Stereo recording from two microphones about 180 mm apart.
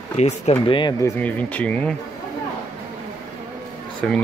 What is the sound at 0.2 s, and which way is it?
Speech, 30° left (ahead or behind).